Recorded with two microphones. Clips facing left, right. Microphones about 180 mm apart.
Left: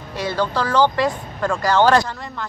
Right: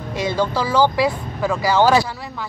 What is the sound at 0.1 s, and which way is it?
Speech, 10° right (ahead or behind).